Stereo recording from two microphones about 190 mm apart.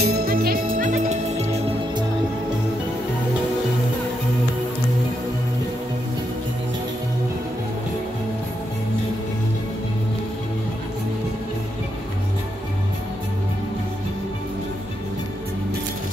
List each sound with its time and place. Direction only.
0.0 s music: 55° right (ahead or behind); by 1.6 s 35° right (ahead or behind)